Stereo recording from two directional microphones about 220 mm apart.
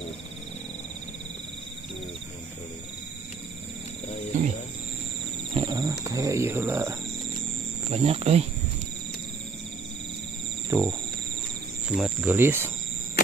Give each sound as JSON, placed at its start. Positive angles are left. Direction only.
{"t": 4.3, "sound": "cricket", "side_deg": -35}
{"t": 5.5, "sound": "music", "side_deg": -20}
{"t": 7.9, "sound": "speech", "side_deg": -30}
{"t": 10.7, "sound": "speech", "side_deg": -10}
{"t": 11.9, "sound": "speech", "side_deg": -5}